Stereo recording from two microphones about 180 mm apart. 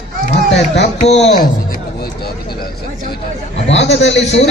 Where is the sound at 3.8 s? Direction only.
75° left (ahead or behind).